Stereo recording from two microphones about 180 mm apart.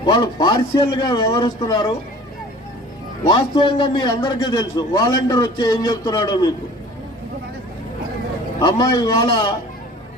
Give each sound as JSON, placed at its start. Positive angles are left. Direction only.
{"t": 0.0, "sound": "a man's voice", "side_deg": 20}
{"t": 3.2, "sound": "a man's voice", "side_deg": 25}
{"t": 8.5, "sound": "a man's voice", "side_deg": 20}